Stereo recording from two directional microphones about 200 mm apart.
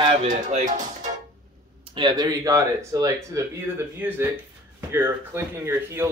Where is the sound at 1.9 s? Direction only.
20° right (ahead or behind).